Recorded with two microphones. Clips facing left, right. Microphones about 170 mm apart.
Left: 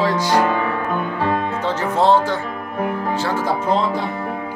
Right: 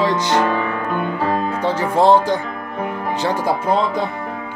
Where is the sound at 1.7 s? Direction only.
10° right (ahead or behind).